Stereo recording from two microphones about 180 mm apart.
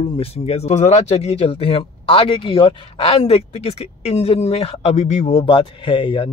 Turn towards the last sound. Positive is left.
turn(degrees=30)  # may be behind; listen again after turning